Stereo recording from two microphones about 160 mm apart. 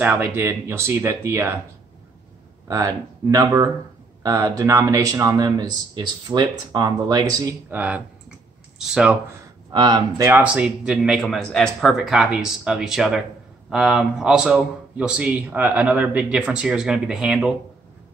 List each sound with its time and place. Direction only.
0.0 s speech: 10° right (ahead or behind)
2.7 s speech: 20° right (ahead or behind)
8.8 s a man's voice: 5° right (ahead or behind)
9.7 s speech: 25° right (ahead or behind)
10.4 s a man's voice: 5° right (ahead or behind)